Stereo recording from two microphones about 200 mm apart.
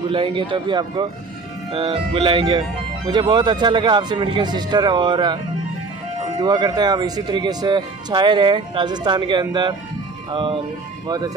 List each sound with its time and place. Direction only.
0.1 s speech: 25° right (ahead or behind)
6.4 s speech: 20° right (ahead or behind)
11.1 s speech: 20° right (ahead or behind)